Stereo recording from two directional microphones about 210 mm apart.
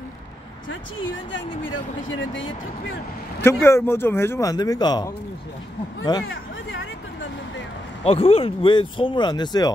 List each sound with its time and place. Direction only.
1.3 s speech: 65° left (ahead or behind)
3.3 s speech: 10° left (ahead or behind)
6.2 s a sound: 70° left (ahead or behind)
8.0 s speech: 30° left (ahead or behind)